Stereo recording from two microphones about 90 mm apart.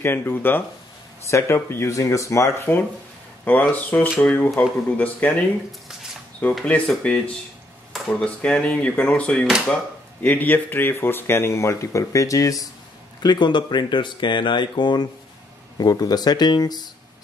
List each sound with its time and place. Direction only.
0.0 s speech: 25° left (ahead or behind)
3.4 s speech: 20° left (ahead or behind)
6.6 s speech: 15° left (ahead or behind); by 12.6 s 40° left (ahead or behind)
13.2 s speech: 55° left (ahead or behind)
15.8 s speech: 45° left (ahead or behind)